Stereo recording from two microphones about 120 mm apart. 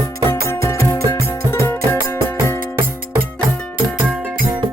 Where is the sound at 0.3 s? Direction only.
25° left (ahead or behind).